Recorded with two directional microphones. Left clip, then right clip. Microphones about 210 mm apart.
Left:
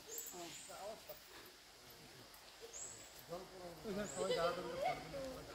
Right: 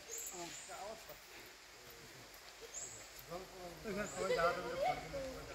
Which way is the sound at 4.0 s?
25° right (ahead or behind).